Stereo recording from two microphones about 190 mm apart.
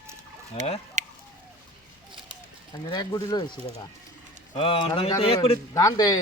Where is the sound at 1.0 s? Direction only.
40° right (ahead or behind).